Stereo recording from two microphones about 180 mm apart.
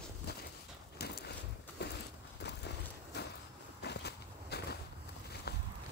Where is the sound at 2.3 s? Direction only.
70° left (ahead or behind).